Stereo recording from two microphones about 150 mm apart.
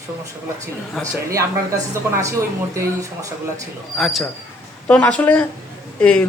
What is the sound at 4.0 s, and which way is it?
A woman's voice, centre (ahead or behind).